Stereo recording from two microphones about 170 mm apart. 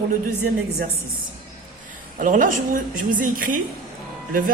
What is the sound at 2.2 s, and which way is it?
A woman's voice, 50° right (ahead or behind).